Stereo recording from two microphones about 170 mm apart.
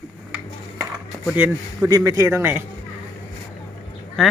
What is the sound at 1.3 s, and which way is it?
Speech, 10° right (ahead or behind).